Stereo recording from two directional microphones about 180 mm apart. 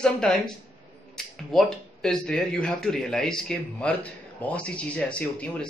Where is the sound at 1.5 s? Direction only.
5° left (ahead or behind).